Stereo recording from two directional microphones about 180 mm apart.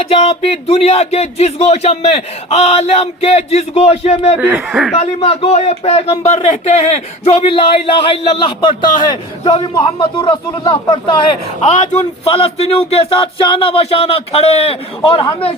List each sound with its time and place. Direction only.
0.0 s speech: 30° left (ahead or behind)
4.4 s speech: 10° right (ahead or behind)
4.9 s speech: 35° left (ahead or behind)